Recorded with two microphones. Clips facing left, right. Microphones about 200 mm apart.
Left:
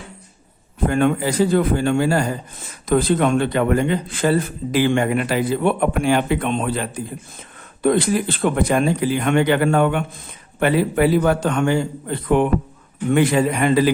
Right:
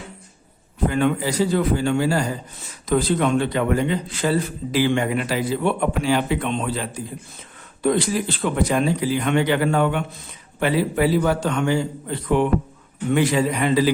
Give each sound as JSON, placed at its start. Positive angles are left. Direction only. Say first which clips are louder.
{"t": 0.9, "sound": "speech", "louder": "left 2 dB", "side_deg": 50}